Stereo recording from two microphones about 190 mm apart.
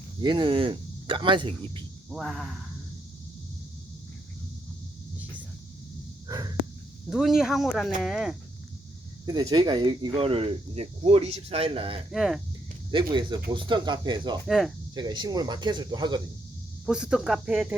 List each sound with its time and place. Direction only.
0.2 s speech: 25° right (ahead or behind)
2.0 s speech: centre (ahead or behind)
6.2 s a sound: 20° right (ahead or behind)
7.1 s speech: 5° right (ahead or behind)
9.2 s speech: 20° right (ahead or behind)
12.1 s speech: centre (ahead or behind)
12.9 s speech: 25° right (ahead or behind)
14.4 s speech: centre (ahead or behind)
14.9 s speech: 25° right (ahead or behind)
16.8 s speech: 5° right (ahead or behind)